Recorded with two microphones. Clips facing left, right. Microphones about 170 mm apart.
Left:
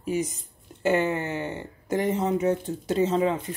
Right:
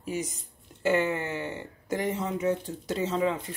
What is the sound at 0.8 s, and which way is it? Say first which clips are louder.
Speech: left 2 dB; 20° left (ahead or behind).